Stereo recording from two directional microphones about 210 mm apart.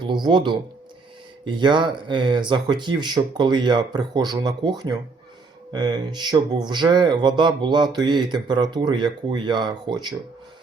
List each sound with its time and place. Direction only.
0.0 s speech: 20° right (ahead or behind)